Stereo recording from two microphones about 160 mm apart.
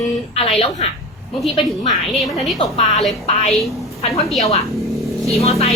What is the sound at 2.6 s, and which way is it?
Speech, 40° left (ahead or behind).